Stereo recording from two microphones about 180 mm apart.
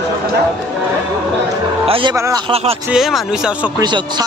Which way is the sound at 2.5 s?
35° right (ahead or behind).